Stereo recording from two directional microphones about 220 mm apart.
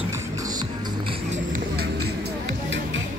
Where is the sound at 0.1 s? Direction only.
15° right (ahead or behind).